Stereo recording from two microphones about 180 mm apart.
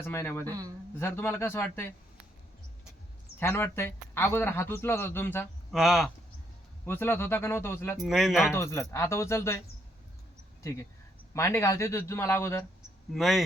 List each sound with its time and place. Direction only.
0.0 s a man's voice: 15° left (ahead or behind)
0.4 s speech: 20° right (ahead or behind)
0.9 s a man's voice: 10° left (ahead or behind)
3.4 s a man's voice: 15° left (ahead or behind)
5.7 s speech: centre (ahead or behind)
6.8 s a man's voice: 15° left (ahead or behind)
7.9 s speech: centre (ahead or behind)
8.5 s a man's voice: 15° left (ahead or behind)
11.3 s a man's voice: 15° left (ahead or behind)
13.1 s speech: centre (ahead or behind)